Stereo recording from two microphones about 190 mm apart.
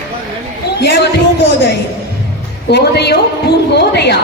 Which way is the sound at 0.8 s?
60° left (ahead or behind).